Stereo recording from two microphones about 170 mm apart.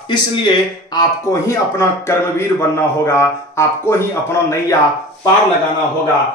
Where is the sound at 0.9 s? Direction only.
15° left (ahead or behind).